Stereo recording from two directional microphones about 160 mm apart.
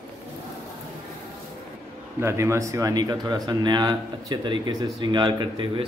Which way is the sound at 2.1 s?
15° right (ahead or behind).